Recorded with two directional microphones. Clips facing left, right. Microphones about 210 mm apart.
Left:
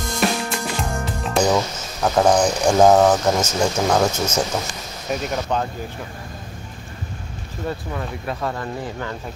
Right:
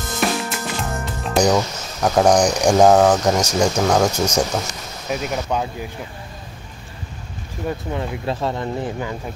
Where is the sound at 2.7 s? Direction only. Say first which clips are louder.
Even; 10° right (ahead or behind).